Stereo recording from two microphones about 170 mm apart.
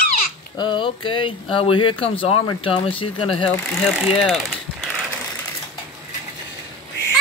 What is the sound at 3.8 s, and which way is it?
Ratchet, centre (ahead or behind).